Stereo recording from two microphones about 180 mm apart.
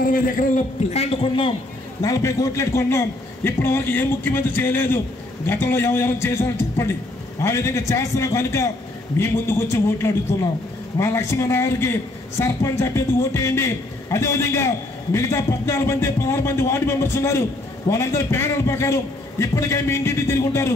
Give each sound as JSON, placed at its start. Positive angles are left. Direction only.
{"t": 0.0, "sound": "a man's voice", "side_deg": 50}
{"t": 0.9, "sound": "a man's voice", "side_deg": 30}
{"t": 2.0, "sound": "a man's voice", "side_deg": 20}